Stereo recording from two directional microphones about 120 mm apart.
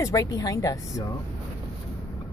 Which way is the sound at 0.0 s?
30° left (ahead or behind).